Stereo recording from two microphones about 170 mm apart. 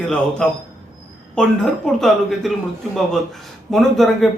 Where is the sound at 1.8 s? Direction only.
Centre (ahead or behind).